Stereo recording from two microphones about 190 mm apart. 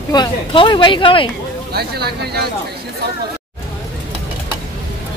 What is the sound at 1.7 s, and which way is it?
Speech, 55° right (ahead or behind).